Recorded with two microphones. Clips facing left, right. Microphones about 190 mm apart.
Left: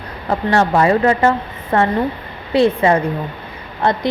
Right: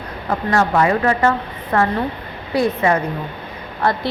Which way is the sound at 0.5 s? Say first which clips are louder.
Left 2 dB; 30° left (ahead or behind).